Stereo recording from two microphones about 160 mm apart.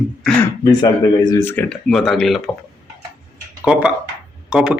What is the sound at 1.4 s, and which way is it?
Speech, 10° left (ahead or behind).